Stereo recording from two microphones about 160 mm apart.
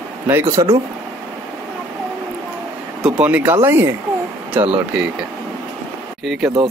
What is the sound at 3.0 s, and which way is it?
Speech, 10° right (ahead or behind).